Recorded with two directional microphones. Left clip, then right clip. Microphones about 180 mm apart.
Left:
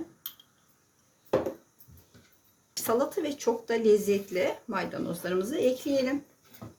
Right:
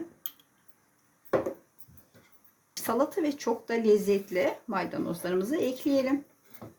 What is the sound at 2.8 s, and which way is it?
Speech, 40° right (ahead or behind).